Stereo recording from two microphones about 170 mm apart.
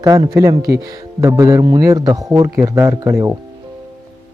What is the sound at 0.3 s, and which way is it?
Speech, 20° right (ahead or behind).